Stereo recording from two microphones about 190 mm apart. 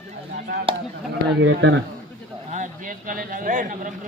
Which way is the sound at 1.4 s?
80° right.